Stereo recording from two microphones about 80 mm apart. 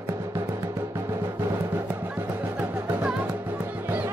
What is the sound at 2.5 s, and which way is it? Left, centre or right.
Music, centre.